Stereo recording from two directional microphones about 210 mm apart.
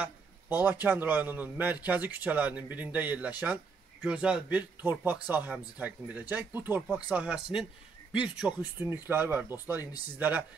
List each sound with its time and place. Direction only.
0.0 s speech: 10° right (ahead or behind)